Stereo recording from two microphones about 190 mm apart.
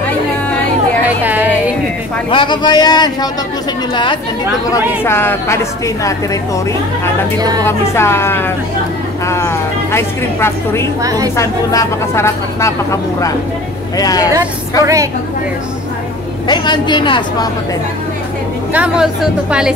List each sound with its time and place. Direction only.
1.2 s a sound: 10° right (ahead or behind)
2.2 s speech: 25° left (ahead or behind)
4.7 s speech: 10° left (ahead or behind)
7.3 s a woman's voice: 20° right (ahead or behind)
7.6 s speech: 15° left (ahead or behind)
11.0 s a woman's voice: 20° right (ahead or behind)
11.3 s speech: 15° left (ahead or behind)
16.4 s speech: 25° left (ahead or behind)
18.7 s a woman's voice: 5° right (ahead or behind)